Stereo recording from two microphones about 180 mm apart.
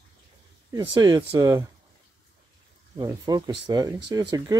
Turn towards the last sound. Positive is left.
turn(degrees=-20)  # may be behind; listen again after turning